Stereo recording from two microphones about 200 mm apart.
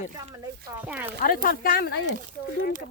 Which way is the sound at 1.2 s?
45° left (ahead or behind).